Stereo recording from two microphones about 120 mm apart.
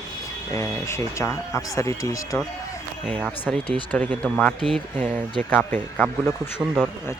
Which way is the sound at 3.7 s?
10° left (ahead or behind).